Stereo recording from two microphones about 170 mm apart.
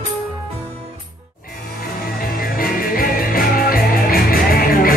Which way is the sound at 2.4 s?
60° left (ahead or behind).